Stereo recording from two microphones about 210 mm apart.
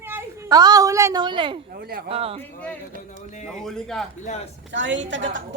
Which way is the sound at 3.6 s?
Centre (ahead or behind).